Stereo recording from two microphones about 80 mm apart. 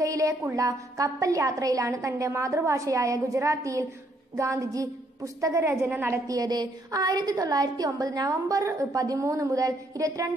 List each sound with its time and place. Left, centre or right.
0.0 s a sound: right
0.7 s a woman's voice: right
6.2 s a woman's voice: right